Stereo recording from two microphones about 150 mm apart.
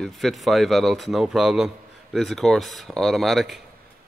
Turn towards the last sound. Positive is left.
turn(degrees=0)  # may be behind; listen again after turning